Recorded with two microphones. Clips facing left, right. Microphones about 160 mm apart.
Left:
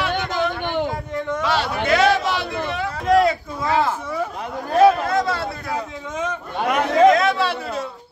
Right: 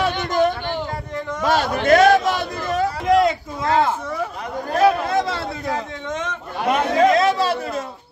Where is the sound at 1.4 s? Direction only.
45° right (ahead or behind).